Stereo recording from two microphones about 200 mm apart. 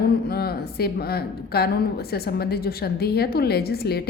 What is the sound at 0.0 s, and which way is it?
A woman's voice, 50° left (ahead or behind).